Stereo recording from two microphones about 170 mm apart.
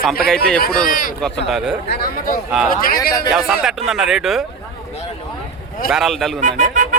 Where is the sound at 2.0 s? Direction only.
55° left (ahead or behind).